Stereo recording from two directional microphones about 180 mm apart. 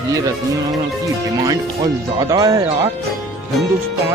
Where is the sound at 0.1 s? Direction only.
20° right (ahead or behind).